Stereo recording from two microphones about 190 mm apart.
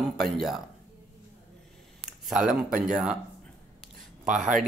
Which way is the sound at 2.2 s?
5° right (ahead or behind).